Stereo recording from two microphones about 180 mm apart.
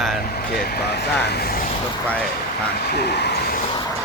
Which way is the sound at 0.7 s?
65° left (ahead or behind).